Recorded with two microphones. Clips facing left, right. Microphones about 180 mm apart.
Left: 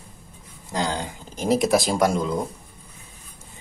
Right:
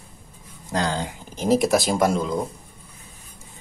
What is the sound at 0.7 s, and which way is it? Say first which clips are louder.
Speech: right 1 dB; 15° left (ahead or behind).